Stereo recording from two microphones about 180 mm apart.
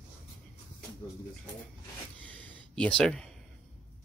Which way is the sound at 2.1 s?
10° left (ahead or behind).